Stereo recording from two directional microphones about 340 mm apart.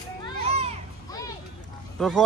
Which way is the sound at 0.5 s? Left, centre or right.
Centre.